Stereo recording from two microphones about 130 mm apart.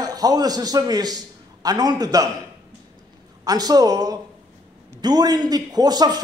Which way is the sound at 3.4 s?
30° right (ahead or behind).